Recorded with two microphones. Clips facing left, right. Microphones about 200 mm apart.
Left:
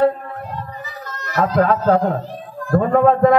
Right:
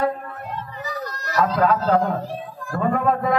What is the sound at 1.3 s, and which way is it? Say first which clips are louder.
Speech: left 3 dB; 55° left (ahead or behind).